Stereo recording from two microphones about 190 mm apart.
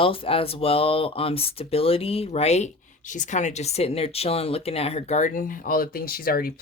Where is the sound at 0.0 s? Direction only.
30° left (ahead or behind).